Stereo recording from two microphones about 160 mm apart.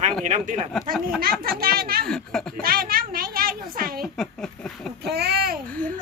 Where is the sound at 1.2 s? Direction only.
70° right (ahead or behind).